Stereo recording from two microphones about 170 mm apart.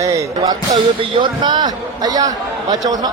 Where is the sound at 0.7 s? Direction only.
30° right (ahead or behind).